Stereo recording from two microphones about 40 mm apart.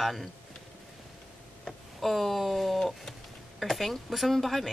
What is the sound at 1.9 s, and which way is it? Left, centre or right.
Speech, centre.